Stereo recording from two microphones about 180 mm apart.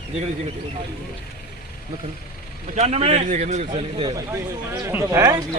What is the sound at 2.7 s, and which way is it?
A man's voice, 35° right (ahead or behind).